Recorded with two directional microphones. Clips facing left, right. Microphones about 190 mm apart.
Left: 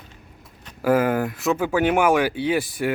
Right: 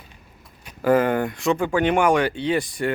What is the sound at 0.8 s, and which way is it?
Speech, 5° left (ahead or behind).